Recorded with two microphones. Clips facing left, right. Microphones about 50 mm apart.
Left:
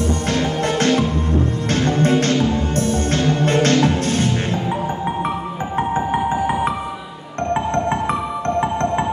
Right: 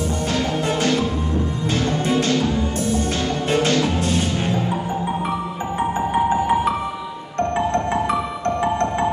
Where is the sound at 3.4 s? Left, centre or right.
Left.